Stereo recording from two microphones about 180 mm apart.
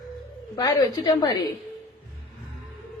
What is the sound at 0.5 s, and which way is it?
Speech, 20° left (ahead or behind).